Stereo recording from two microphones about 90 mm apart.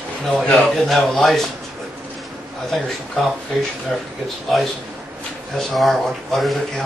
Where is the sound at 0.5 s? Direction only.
15° left (ahead or behind).